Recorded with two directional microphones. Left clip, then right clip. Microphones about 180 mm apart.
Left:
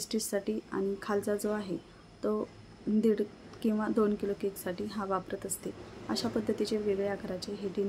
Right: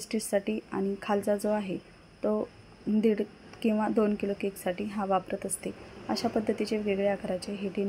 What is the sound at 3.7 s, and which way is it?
Speech, 15° right (ahead or behind).